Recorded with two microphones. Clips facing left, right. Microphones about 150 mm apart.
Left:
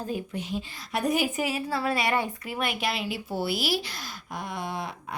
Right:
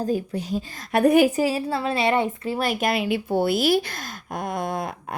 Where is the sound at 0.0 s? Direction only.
40° right (ahead or behind).